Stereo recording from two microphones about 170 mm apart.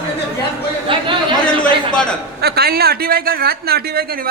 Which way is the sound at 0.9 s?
30° right (ahead or behind).